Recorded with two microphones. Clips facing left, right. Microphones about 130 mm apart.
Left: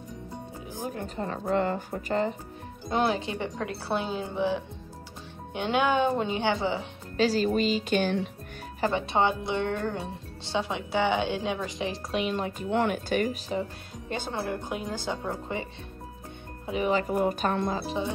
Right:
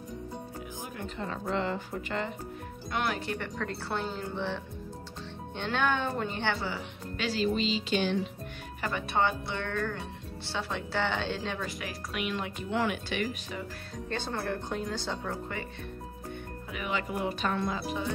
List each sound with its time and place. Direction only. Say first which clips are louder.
0.8 s speech: left 6 dB; 40° left (ahead or behind)
3.2 s a woman's voice: left 3 dB; 20° left (ahead or behind)
5.7 s a woman's voice: left 5 dB; 15° left (ahead or behind)
7.2 s speech: left 5 dB; 40° left (ahead or behind)
8.8 s speech: left 4 dB; 20° left (ahead or behind); by 13.7 s 35° left (ahead or behind)
14.0 s a woman's voice: left 2 dB; 15° left (ahead or behind)
16.6 s speech: left 8 dB; 30° left (ahead or behind)
17.1 s speech: left 5 dB; 45° left (ahead or behind); by 18.1 s 25° left (ahead or behind)